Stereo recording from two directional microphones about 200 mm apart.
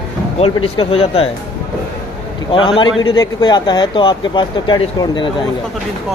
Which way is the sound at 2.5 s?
25° left (ahead or behind).